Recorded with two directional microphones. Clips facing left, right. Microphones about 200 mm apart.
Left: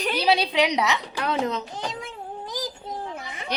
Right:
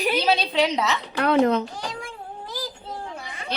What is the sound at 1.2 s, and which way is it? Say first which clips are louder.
Speech: right 9 dB; 60° right (ahead or behind).